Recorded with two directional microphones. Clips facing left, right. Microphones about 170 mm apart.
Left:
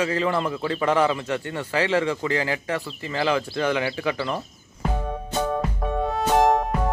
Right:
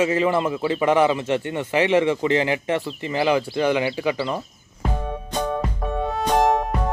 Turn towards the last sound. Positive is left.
turn(degrees=0)  # may be behind; listen again after turning